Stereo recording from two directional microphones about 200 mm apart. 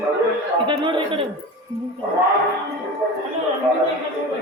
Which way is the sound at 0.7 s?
25° right (ahead or behind).